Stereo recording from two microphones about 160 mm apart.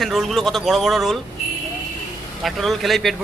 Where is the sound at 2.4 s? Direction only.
Centre (ahead or behind).